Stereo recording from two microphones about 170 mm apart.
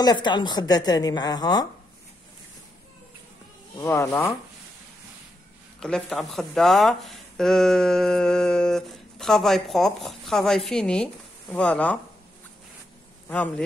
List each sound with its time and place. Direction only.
0.0 s a woman's voice: 25° left (ahead or behind)
3.7 s speech: 20° left (ahead or behind)
5.8 s speech: 5° left (ahead or behind)